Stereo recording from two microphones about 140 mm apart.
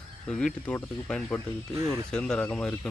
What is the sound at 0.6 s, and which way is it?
Speech, 5° left (ahead or behind).